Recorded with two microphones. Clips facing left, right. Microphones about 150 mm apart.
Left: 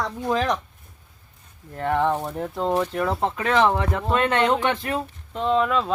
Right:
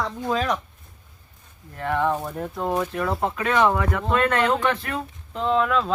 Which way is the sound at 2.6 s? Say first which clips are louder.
Left 2 dB; 10° right (ahead or behind).